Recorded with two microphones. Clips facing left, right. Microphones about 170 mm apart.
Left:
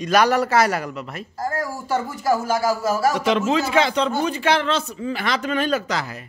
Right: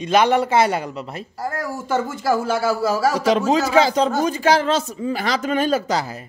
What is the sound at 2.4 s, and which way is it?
A man's voice, 35° right (ahead or behind).